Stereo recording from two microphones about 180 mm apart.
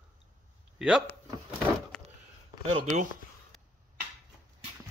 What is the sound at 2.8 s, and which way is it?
Speech, 40° right (ahead or behind).